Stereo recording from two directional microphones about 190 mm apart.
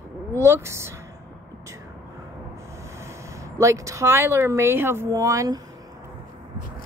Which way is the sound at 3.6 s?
15° right (ahead or behind).